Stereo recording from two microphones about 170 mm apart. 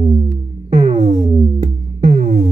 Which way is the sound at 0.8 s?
40° right (ahead or behind).